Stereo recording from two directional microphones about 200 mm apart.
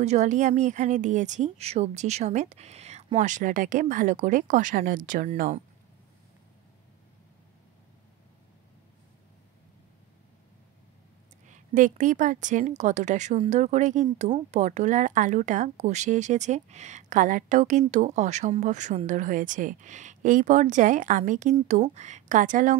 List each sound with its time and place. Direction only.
0.0 s a woman's voice: 35° right (ahead or behind)
11.4 s a woman's voice: 40° right (ahead or behind)